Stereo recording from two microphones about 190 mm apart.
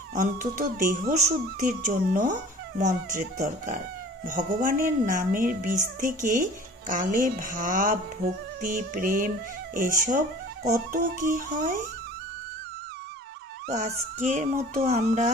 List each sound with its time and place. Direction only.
0.1 s a woman's voice: 45° right (ahead or behind)
13.7 s speech: 40° right (ahead or behind)